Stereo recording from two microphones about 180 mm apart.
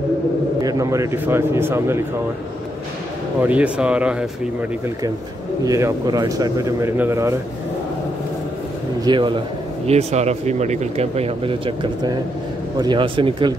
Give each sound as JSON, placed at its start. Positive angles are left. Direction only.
{"t": 0.6, "sound": "a man's voice", "side_deg": -20}
{"t": 3.3, "sound": "a man's voice", "side_deg": -10}
{"t": 5.7, "sound": "a man's voice", "side_deg": -20}
{"t": 9.0, "sound": "speech", "side_deg": -25}
{"t": 9.8, "sound": "speech", "side_deg": -35}